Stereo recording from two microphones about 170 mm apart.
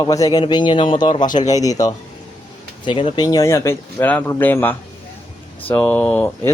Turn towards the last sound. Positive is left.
turn(degrees=10)  # may be behind; listen again after turning